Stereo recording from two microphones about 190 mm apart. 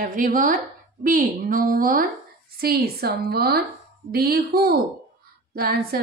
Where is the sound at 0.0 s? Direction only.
45° right (ahead or behind).